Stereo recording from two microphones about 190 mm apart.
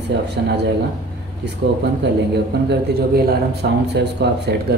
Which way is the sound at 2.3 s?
60° right (ahead or behind).